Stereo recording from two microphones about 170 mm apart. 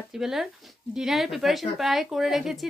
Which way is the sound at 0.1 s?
Centre (ahead or behind).